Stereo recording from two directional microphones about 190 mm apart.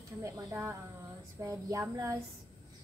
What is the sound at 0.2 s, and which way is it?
A woman's voice, 15° right (ahead or behind).